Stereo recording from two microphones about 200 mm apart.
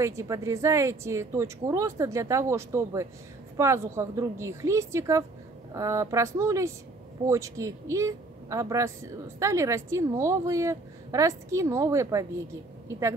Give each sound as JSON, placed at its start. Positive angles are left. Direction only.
{"t": 0.0, "sound": "speech", "side_deg": -15}